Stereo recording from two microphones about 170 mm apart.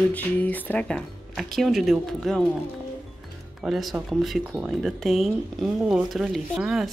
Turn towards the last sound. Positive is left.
turn(degrees=-5)  # may be behind; listen again after turning